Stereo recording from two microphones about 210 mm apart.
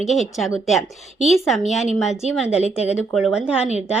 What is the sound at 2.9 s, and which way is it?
Speech, 5° right (ahead or behind).